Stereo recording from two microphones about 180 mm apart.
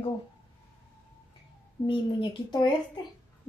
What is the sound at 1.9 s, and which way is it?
A woman's voice, 25° left (ahead or behind).